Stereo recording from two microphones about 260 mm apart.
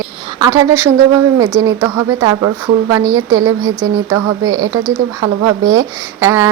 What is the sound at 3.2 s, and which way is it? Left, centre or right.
Speech, right.